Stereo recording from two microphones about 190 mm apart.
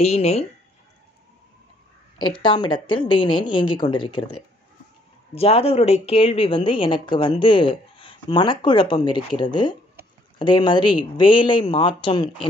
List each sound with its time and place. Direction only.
0.0 s speech: 35° left (ahead or behind)
2.1 s speech: 25° left (ahead or behind)